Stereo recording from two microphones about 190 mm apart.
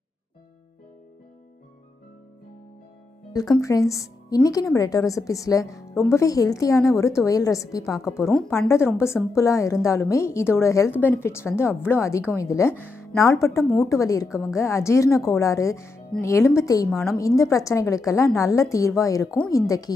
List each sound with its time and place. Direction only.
3.8 s speech: centre (ahead or behind)
4.3 s a woman's voice: 20° left (ahead or behind)